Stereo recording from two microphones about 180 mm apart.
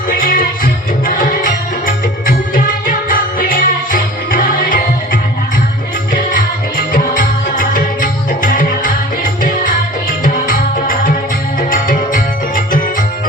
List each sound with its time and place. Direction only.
0.2 s music: 50° left (ahead or behind)
6.9 s music: 45° left (ahead or behind)